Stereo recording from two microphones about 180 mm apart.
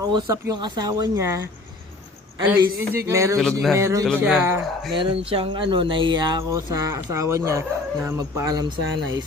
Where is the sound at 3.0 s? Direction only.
15° right (ahead or behind).